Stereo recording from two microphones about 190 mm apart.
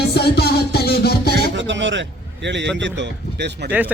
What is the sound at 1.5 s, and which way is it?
A man's voice, 75° right (ahead or behind).